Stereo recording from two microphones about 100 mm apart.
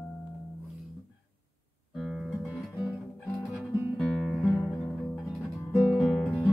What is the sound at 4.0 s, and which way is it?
Music, 5° left (ahead or behind).